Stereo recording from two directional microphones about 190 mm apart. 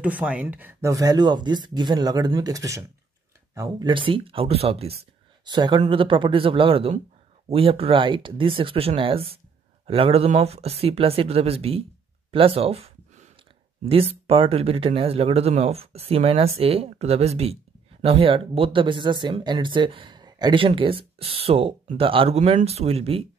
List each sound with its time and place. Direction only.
0.0 s speech: 5° right (ahead or behind)
3.9 s speech: 25° right (ahead or behind)
12.3 s a sound: 30° right (ahead or behind)
13.8 s speech: 30° right (ahead or behind)